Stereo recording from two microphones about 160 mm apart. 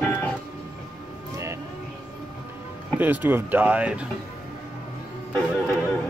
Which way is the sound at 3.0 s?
10° right (ahead or behind).